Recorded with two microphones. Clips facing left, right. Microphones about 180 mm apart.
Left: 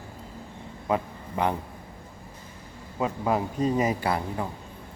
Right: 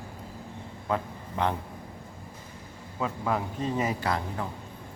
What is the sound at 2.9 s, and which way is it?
A man's voice, 20° left (ahead or behind).